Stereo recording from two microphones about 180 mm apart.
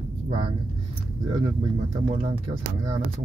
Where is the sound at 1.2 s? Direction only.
25° right (ahead or behind).